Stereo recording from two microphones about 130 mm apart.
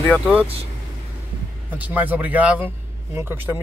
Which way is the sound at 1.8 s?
10° right (ahead or behind).